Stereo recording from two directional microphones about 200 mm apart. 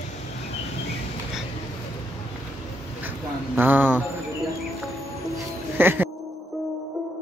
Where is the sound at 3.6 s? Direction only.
10° right (ahead or behind).